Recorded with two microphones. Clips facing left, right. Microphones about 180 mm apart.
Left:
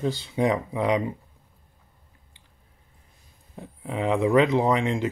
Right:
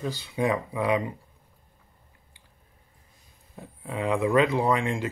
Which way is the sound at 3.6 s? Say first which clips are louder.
Left 2 dB; 20° left (ahead or behind).